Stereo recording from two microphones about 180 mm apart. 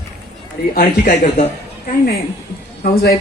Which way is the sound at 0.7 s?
45° left (ahead or behind).